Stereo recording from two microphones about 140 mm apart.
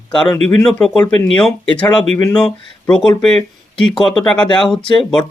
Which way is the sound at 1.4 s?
5° left (ahead or behind).